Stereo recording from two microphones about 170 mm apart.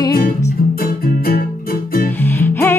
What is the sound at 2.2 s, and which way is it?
Music, 10° left (ahead or behind).